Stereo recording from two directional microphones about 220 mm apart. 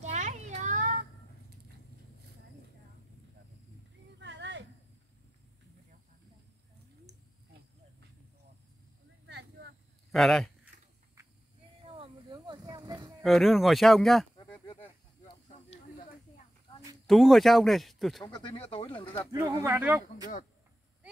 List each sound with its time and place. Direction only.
0.0 s children playing: 30° right (ahead or behind)
4.2 s a sound: 55° right (ahead or behind)
9.2 s a sound: 50° right (ahead or behind)
10.1 s speech: centre (ahead or behind)
11.8 s a sound: 25° right (ahead or behind)
13.2 s speech: centre (ahead or behind)
17.0 s speech: centre (ahead or behind)
18.2 s speech: 20° left (ahead or behind)
19.3 s speech: 10° right (ahead or behind)